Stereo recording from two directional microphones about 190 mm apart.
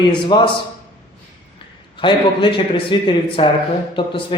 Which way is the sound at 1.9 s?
25° left (ahead or behind).